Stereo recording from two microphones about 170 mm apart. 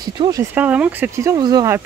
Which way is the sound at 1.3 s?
25° right (ahead or behind).